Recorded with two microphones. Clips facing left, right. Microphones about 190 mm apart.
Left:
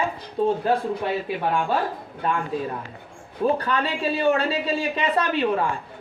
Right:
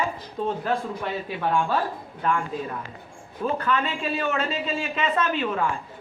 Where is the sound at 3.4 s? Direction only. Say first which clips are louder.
Left 3 dB; 35° left (ahead or behind).